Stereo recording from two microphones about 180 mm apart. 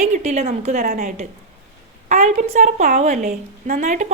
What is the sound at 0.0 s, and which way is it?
A woman's voice, 40° right (ahead or behind).